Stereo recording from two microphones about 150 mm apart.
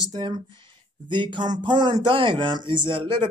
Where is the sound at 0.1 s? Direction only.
30° right (ahead or behind).